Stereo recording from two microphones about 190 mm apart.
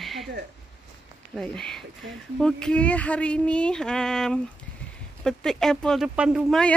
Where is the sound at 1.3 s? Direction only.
5° left (ahead or behind).